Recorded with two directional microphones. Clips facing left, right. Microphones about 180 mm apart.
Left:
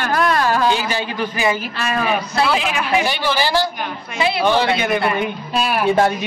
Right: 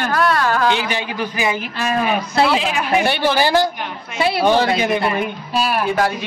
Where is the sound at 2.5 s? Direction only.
30° right (ahead or behind).